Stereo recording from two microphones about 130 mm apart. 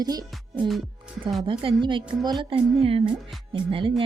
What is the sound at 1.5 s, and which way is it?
Speech, 40° right (ahead or behind).